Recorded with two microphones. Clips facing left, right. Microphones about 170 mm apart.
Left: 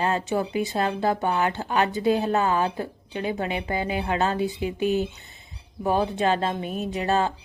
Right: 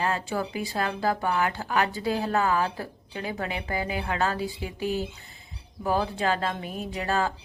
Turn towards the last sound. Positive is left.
turn(degrees=25)  # may be behind; listen again after turning